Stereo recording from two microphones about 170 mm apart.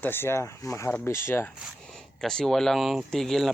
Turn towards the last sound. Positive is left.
turn(degrees=0)  # may be behind; listen again after turning